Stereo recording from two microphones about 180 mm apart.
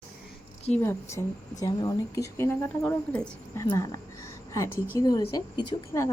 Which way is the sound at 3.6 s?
20° left (ahead or behind).